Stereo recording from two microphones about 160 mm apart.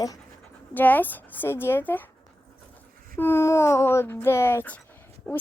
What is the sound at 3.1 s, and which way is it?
Speech, 15° left (ahead or behind).